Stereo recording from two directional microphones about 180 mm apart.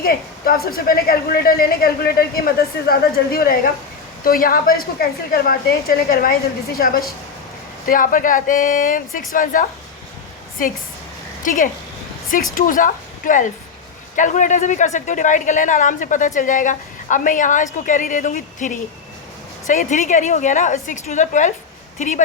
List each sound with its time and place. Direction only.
0.0 s a man's voice: 55° left (ahead or behind)
11.4 s a woman's voice: 45° left (ahead or behind)